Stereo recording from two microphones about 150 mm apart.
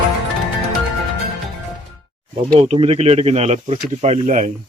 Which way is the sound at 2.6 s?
45° right (ahead or behind).